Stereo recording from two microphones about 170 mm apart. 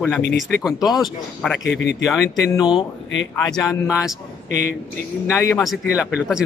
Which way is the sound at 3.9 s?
5° right (ahead or behind).